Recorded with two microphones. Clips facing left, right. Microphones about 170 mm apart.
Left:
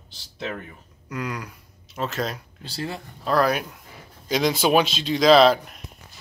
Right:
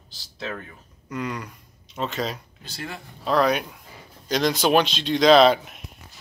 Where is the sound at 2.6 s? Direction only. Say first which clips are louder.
Left 5 dB; 30° left (ahead or behind).